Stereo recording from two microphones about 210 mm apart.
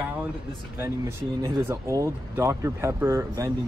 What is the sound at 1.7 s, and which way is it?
Speech, 15° right (ahead or behind).